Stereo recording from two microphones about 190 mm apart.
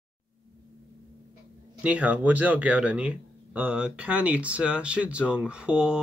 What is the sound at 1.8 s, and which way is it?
Speech, 5° right (ahead or behind).